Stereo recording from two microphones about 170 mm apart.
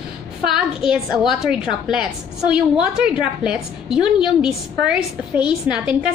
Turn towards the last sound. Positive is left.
turn(degrees=-5)  # may be behind; listen again after turning